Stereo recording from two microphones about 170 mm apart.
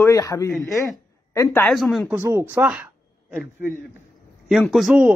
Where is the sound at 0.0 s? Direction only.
20° left (ahead or behind).